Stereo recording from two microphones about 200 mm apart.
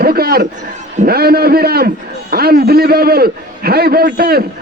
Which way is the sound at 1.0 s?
50° right (ahead or behind).